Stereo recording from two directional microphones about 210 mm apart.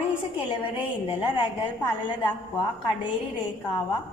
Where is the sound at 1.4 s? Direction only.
20° left (ahead or behind).